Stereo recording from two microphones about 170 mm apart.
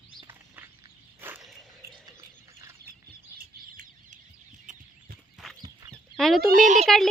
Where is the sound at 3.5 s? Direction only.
50° right (ahead or behind).